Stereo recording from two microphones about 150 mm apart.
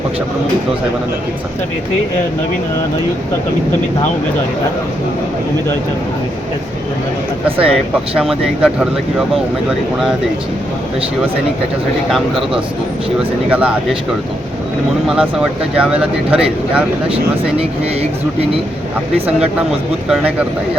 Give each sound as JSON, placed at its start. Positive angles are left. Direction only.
{"t": 7.4, "sound": "speech", "side_deg": -40}
{"t": 8.1, "sound": "speech", "side_deg": 0}
{"t": 13.5, "sound": "speech", "side_deg": -10}
{"t": 15.0, "sound": "speech", "side_deg": -5}
{"t": 17.6, "sound": "speech", "side_deg": -45}